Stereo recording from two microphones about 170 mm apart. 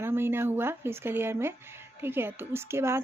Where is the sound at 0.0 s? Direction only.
15° right (ahead or behind).